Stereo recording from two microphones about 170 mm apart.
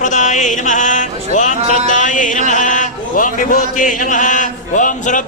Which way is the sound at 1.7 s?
40° right (ahead or behind).